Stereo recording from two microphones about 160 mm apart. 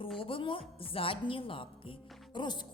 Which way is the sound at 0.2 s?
35° left (ahead or behind).